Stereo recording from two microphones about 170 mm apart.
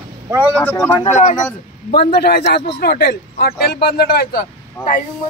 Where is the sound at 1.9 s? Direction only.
70° left (ahead or behind).